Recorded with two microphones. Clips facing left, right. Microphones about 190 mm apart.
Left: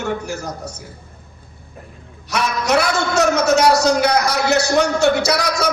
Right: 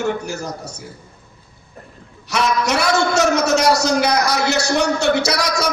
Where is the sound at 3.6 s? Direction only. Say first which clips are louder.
Left 2 dB; 65° left (ahead or behind).